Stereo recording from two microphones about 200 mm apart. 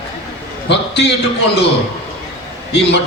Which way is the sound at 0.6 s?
60° left (ahead or behind).